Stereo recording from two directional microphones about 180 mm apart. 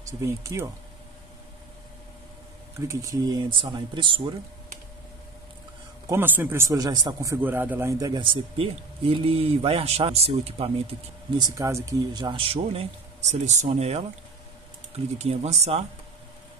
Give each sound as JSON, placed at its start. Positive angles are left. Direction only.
{"t": 0.2, "sound": "speech", "side_deg": -15}
{"t": 2.8, "sound": "a man's voice", "side_deg": -15}
{"t": 6.0, "sound": "a man's voice", "side_deg": -10}
{"t": 15.1, "sound": "speech", "side_deg": -35}